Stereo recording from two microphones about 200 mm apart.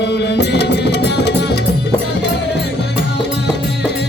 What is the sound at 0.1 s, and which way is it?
Music, 55° left (ahead or behind).